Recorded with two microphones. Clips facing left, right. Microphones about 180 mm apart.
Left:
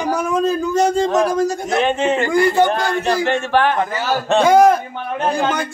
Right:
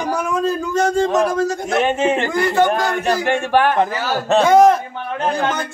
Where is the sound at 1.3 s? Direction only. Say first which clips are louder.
Left 1 dB; 15° left (ahead or behind).